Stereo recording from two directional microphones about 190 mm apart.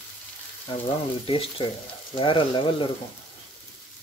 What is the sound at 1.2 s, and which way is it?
Speech, 30° left (ahead or behind).